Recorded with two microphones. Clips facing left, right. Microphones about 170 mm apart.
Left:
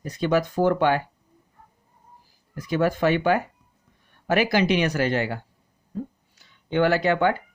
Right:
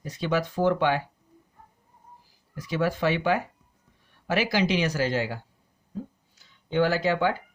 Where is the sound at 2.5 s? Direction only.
50° left (ahead or behind).